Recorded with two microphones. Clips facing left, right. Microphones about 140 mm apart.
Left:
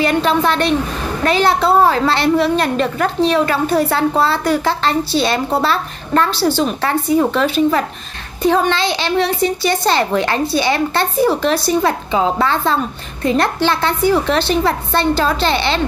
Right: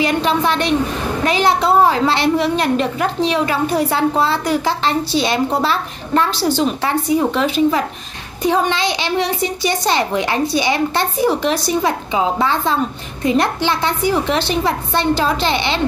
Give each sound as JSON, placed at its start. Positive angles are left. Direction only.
{"t": 0.0, "sound": "a woman's voice", "side_deg": -15}